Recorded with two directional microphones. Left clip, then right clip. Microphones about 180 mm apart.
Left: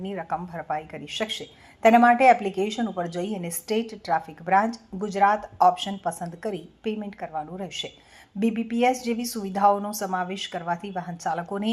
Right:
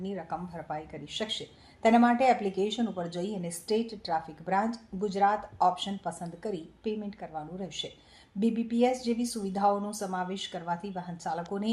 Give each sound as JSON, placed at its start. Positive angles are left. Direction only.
{"t": 0.0, "sound": "a woman's voice", "side_deg": 15}